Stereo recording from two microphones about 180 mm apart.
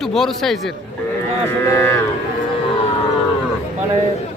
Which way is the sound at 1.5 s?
15° left (ahead or behind).